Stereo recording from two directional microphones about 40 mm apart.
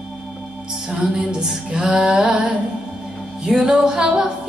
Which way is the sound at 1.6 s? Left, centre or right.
Right.